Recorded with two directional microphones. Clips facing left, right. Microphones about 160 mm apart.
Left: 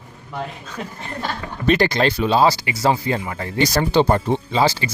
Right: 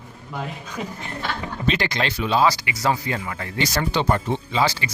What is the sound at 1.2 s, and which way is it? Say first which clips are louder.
Speech: left 5 dB; 40° left (ahead or behind).